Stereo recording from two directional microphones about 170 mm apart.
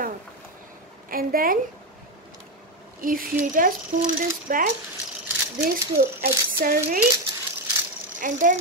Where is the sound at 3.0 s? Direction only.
55° right (ahead or behind).